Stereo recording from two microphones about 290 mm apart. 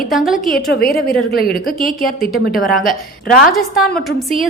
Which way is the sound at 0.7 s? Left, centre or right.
Left.